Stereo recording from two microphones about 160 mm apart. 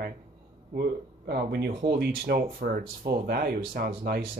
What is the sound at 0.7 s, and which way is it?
Speech, 80° right.